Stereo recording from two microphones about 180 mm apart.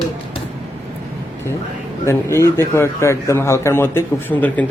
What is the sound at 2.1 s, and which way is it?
A man's voice, 15° left (ahead or behind).